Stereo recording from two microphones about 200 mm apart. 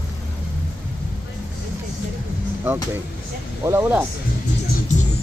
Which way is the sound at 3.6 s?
15° right (ahead or behind).